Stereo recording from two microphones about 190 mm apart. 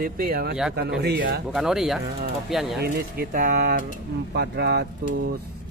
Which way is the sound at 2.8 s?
50° right (ahead or behind).